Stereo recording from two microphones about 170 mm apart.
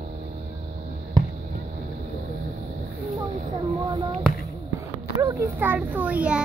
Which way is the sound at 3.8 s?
25° right (ahead or behind).